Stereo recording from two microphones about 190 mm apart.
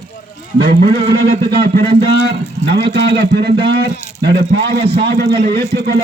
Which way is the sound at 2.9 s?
60° right (ahead or behind).